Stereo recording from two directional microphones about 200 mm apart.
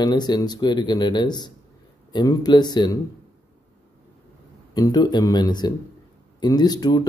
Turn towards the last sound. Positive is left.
turn(degrees=20)  # may be behind; listen again after turning